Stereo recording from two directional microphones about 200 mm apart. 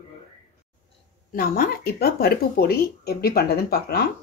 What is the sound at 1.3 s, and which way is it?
Speech, 45° left (ahead or behind).